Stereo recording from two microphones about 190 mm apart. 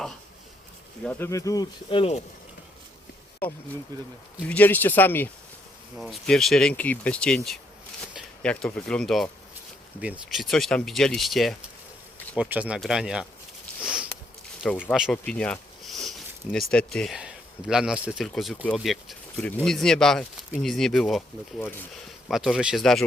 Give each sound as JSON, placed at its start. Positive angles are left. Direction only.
{"t": 1.0, "sound": "speech", "side_deg": 15}
{"t": 3.4, "sound": "speech", "side_deg": 10}
{"t": 3.9, "sound": "speech", "side_deg": -20}
{"t": 4.4, "sound": "speech", "side_deg": 10}
{"t": 13.8, "sound": "sniff", "side_deg": -5}
{"t": 14.6, "sound": "speech", "side_deg": 0}
{"t": 15.2, "sound": "a sound", "side_deg": 5}
{"t": 16.7, "sound": "speech", "side_deg": 0}